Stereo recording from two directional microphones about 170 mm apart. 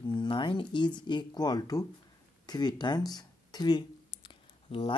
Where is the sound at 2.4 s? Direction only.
25° left (ahead or behind).